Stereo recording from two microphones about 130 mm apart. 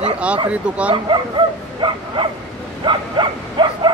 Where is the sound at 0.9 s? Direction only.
40° right (ahead or behind).